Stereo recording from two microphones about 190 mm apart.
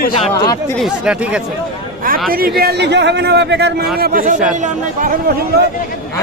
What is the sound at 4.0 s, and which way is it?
Speech, 45° right (ahead or behind).